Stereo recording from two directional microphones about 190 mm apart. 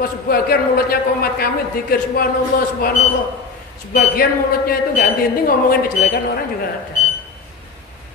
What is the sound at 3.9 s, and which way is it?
A woman's voice, 50° left (ahead or behind).